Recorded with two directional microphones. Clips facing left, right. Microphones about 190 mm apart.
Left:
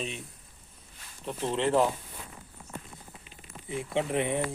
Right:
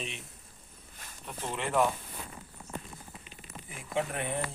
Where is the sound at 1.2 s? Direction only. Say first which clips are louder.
Left 7 dB; 30° left (ahead or behind).